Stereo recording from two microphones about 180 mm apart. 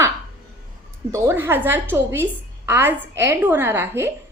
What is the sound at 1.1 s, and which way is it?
A woman's voice, 15° right (ahead or behind).